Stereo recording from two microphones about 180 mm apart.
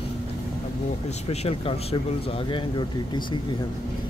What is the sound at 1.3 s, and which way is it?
Speech, 30° left (ahead or behind).